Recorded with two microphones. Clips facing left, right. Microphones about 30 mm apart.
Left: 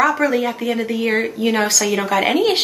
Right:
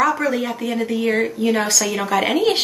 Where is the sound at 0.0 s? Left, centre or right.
Centre.